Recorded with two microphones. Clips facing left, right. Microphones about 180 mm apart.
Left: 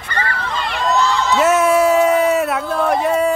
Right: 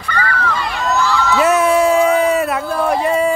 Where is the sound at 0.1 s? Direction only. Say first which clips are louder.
Right 3 dB; 25° left (ahead or behind).